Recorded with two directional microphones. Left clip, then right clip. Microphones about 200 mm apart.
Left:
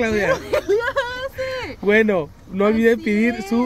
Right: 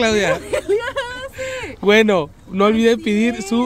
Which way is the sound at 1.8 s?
20° right (ahead or behind).